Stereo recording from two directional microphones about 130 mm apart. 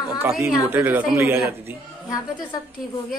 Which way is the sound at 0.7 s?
10° right (ahead or behind).